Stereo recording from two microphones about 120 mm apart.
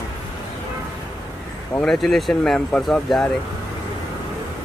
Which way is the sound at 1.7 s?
5° left (ahead or behind).